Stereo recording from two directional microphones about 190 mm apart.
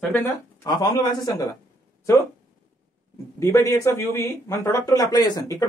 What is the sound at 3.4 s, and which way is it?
Speech, 15° left (ahead or behind).